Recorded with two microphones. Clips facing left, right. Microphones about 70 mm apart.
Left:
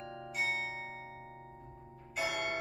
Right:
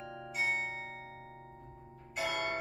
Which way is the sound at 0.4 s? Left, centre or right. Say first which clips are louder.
Right 2 dB; centre.